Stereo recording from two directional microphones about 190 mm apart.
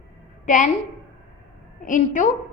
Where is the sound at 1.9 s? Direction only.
40° left (ahead or behind).